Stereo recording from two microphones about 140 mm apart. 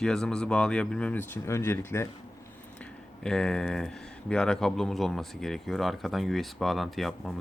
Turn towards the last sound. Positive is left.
turn(degrees=0)  # may be behind; listen again after turning